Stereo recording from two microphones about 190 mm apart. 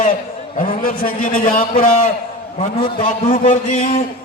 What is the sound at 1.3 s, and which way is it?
Speech, 45° left (ahead or behind).